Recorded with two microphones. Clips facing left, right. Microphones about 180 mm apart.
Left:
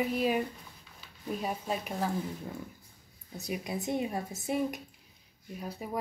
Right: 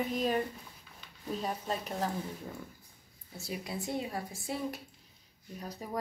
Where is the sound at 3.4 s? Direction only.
20° left (ahead or behind).